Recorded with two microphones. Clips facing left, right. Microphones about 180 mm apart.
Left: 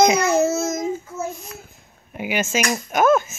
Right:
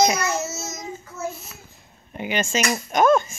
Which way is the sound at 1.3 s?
5° right (ahead or behind).